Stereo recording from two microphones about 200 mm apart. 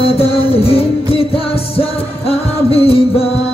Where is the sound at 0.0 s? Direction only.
30° left (ahead or behind).